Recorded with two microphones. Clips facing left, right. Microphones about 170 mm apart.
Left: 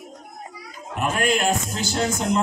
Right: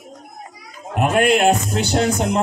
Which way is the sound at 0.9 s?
65° right (ahead or behind).